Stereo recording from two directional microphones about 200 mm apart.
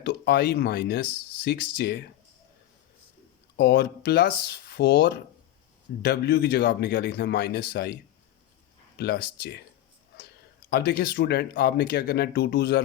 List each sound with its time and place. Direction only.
0.0 s speech: 55° left (ahead or behind)
3.6 s speech: 55° left (ahead or behind)
9.0 s speech: 55° left (ahead or behind)
10.7 s speech: 55° left (ahead or behind)